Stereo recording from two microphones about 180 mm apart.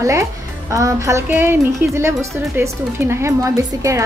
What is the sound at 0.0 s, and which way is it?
Speech, 15° right (ahead or behind).